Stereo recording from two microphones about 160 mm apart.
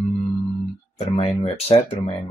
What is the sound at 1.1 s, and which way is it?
Speech, 35° left (ahead or behind).